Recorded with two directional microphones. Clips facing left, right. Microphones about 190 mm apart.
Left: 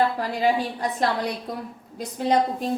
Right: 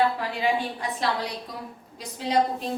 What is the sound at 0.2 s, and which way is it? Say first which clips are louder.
A woman's voice: left 3 dB; 40° left (ahead or behind).